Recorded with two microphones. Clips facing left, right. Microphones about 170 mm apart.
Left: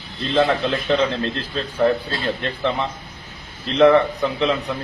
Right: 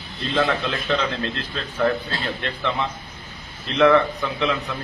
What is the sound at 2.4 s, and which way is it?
A man's voice, 35° left (ahead or behind).